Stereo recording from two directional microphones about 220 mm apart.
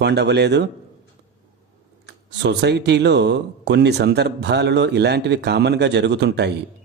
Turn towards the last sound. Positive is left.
turn(degrees=-50)  # may be behind; listen again after turning